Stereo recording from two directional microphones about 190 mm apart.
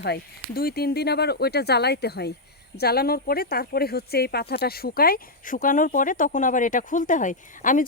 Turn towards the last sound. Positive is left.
turn(degrees=40)  # may be behind; listen again after turning